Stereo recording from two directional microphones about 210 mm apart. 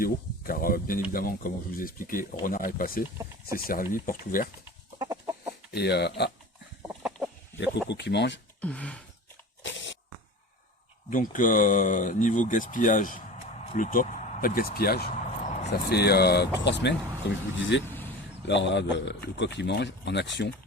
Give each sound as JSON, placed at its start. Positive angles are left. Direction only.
{"t": 0.0, "sound": "speech", "side_deg": 45}
{"t": 3.2, "sound": "speech", "side_deg": -15}
{"t": 3.7, "sound": "speech", "side_deg": 40}
{"t": 4.9, "sound": "chicken", "side_deg": -15}
{"t": 5.7, "sound": "speech", "side_deg": 50}
{"t": 6.8, "sound": "chicken", "side_deg": -5}
{"t": 7.9, "sound": "speech", "side_deg": 55}
{"t": 8.6, "sound": "gasp", "side_deg": 5}
{"t": 9.6, "sound": "a sound", "side_deg": 60}
{"t": 11.1, "sound": "speech", "side_deg": 40}